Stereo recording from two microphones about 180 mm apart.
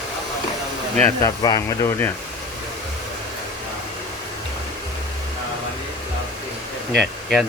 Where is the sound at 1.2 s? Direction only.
20° left (ahead or behind).